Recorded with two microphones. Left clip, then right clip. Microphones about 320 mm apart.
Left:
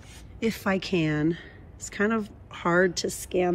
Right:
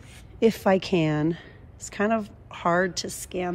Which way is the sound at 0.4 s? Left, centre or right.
Centre.